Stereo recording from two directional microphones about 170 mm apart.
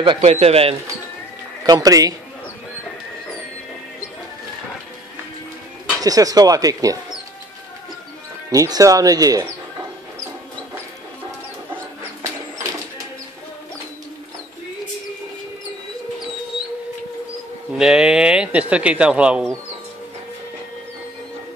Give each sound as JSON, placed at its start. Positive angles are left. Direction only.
{"t": 0.0, "sound": "speech", "side_deg": -30}
{"t": 1.6, "sound": "speech", "side_deg": -25}
{"t": 6.0, "sound": "speech", "side_deg": -20}
{"t": 8.5, "sound": "speech", "side_deg": -20}
{"t": 17.7, "sound": "speech", "side_deg": -5}